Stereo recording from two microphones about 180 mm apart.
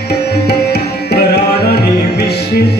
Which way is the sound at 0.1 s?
65° left (ahead or behind).